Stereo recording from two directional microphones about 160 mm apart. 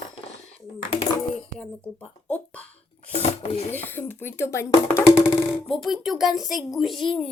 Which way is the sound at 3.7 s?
10° left (ahead or behind).